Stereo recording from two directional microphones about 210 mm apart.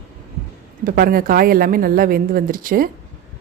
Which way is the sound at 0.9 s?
45° right (ahead or behind).